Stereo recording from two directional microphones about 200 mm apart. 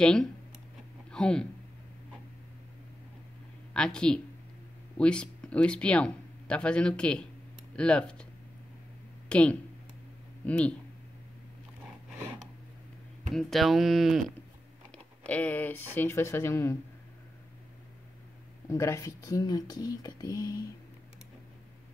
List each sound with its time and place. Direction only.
0.0 s speech: 5° left (ahead or behind)
3.7 s speech: 5° left (ahead or behind)
9.3 s speech: 5° left (ahead or behind)
13.3 s speech: centre (ahead or behind)
18.7 s speech: 15° left (ahead or behind)